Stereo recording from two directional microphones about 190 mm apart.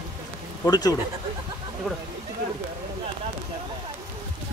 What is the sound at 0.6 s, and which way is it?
Speech, 20° left (ahead or behind).